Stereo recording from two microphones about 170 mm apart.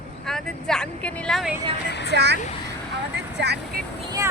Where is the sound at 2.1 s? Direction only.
80° right.